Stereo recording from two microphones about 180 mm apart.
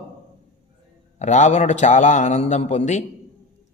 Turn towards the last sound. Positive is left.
turn(degrees=40)  # may be behind; listen again after turning